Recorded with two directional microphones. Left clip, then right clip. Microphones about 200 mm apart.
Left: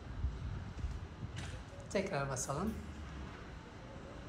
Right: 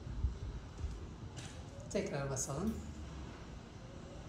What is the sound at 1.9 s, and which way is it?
Speech, 5° right (ahead or behind).